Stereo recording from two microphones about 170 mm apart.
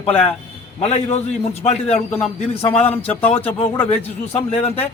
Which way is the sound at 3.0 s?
10° left (ahead or behind).